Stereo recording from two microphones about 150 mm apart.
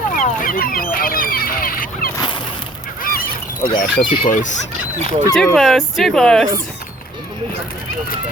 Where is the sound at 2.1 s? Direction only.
30° left (ahead or behind).